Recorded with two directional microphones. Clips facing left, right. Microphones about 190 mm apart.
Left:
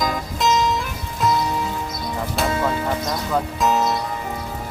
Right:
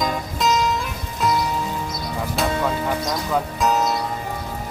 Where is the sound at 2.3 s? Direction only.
Centre (ahead or behind).